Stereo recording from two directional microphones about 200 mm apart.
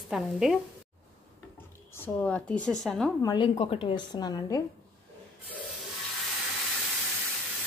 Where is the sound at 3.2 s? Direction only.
20° left (ahead or behind).